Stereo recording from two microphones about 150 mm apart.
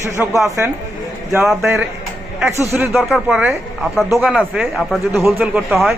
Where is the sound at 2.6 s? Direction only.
15° right (ahead or behind).